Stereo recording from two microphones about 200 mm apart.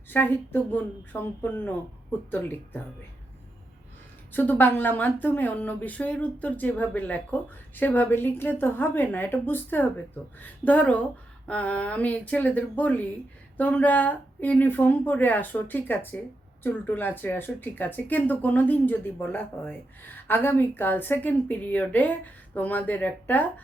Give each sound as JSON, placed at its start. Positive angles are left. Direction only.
{"t": 0.1, "sound": "speech", "side_deg": 10}
{"t": 4.3, "sound": "speech", "side_deg": 10}